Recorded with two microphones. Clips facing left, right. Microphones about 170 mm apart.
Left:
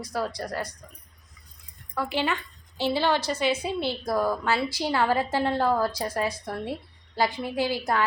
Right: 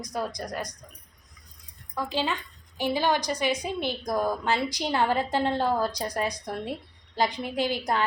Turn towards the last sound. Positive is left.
turn(degrees=-20)  # may be behind; listen again after turning